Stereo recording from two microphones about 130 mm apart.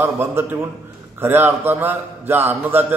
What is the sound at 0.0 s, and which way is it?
A man's voice, 15° right (ahead or behind).